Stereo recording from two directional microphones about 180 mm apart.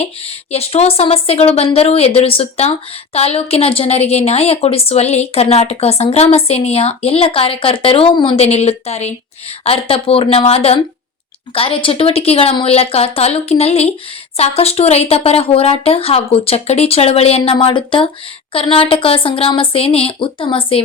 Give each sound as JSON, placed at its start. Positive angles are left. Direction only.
{"t": 0.0, "sound": "speech", "side_deg": 35}